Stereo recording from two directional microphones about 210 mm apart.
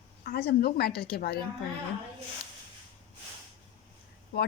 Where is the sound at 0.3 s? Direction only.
50° left (ahead or behind).